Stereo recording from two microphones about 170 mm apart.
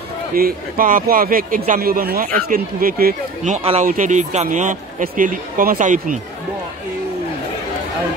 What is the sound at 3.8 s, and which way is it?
A man's voice, 50° right (ahead or behind).